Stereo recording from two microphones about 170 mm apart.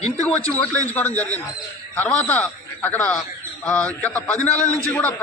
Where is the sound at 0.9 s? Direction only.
10° left (ahead or behind).